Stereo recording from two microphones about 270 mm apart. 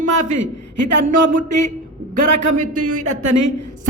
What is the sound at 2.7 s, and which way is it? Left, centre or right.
Speech, right.